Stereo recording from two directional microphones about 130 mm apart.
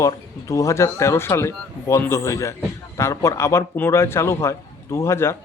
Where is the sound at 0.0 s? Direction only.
25° left (ahead or behind).